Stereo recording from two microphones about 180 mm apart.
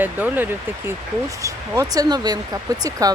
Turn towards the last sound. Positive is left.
turn(degrees=-20)  # may be behind; listen again after turning